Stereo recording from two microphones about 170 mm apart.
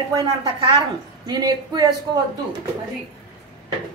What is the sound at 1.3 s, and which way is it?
Speech, 25° right (ahead or behind).